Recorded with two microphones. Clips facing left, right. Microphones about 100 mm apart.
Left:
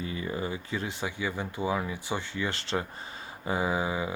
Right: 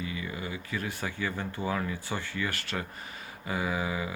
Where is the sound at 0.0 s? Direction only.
35° left (ahead or behind).